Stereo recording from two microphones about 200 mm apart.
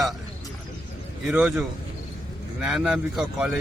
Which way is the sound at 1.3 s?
Centre (ahead or behind).